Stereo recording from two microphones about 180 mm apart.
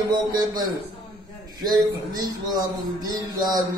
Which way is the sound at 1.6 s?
20° right (ahead or behind).